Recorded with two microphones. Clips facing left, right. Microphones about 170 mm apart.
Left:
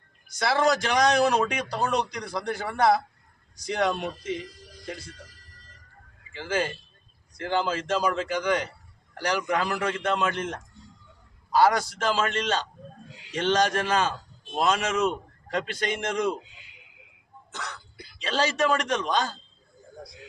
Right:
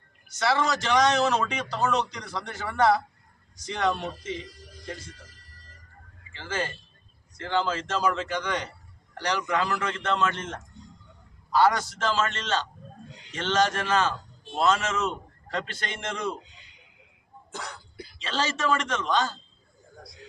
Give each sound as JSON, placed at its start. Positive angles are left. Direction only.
{"t": 0.3, "sound": "a man's voice", "side_deg": 10}
{"t": 6.4, "sound": "a man's voice", "side_deg": 15}
{"t": 18.2, "sound": "a man's voice", "side_deg": 15}